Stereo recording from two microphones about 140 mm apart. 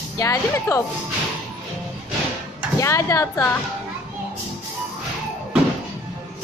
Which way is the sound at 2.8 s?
20° left (ahead or behind).